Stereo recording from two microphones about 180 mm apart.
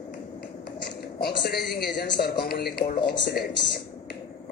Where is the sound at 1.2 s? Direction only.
60° left (ahead or behind).